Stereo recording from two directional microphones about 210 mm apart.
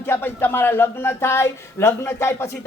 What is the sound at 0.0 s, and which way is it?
Speech, 10° left (ahead or behind).